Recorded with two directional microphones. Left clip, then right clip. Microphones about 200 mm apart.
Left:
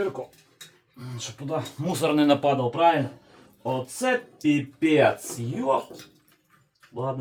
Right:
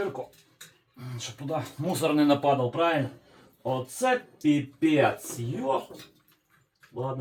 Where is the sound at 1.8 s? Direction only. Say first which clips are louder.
Left 2 dB; 15° left (ahead or behind).